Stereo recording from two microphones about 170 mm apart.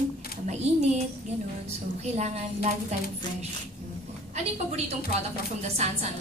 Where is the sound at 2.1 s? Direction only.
40° right (ahead or behind).